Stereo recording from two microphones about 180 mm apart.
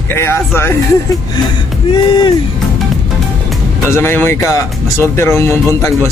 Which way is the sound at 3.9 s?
10° left (ahead or behind).